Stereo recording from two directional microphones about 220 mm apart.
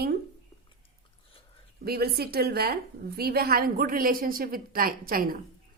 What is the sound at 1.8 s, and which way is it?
A woman's voice, 45° right (ahead or behind).